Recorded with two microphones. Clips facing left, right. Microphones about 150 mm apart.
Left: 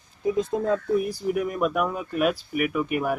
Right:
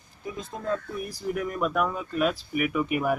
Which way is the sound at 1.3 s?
10° left (ahead or behind).